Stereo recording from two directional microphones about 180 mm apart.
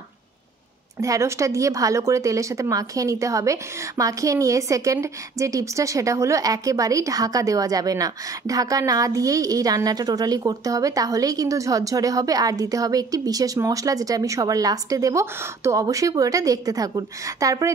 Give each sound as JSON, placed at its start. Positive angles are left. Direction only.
{"t": 1.0, "sound": "a woman's voice", "side_deg": -20}